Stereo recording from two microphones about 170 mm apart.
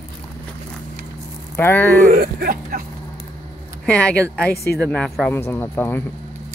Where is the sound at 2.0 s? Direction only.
60° right (ahead or behind).